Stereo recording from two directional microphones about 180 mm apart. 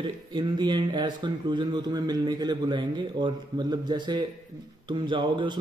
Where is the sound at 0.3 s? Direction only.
25° right (ahead or behind).